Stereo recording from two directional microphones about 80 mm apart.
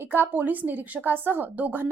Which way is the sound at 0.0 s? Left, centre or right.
Right.